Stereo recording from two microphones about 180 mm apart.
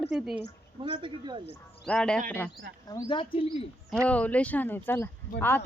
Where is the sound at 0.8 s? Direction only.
30° right (ahead or behind).